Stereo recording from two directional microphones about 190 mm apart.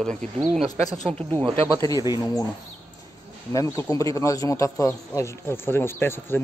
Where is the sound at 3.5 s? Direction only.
15° left (ahead or behind).